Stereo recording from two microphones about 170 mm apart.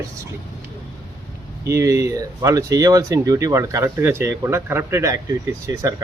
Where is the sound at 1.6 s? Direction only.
15° right (ahead or behind).